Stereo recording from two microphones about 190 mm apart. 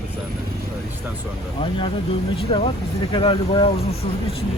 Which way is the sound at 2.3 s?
30° left (ahead or behind).